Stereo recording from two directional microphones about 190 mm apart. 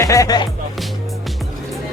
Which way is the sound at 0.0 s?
15° left (ahead or behind).